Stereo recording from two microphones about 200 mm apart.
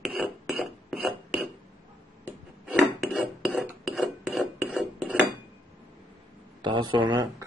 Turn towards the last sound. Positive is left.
turn(degrees=-20)  # may be behind; listen again after turning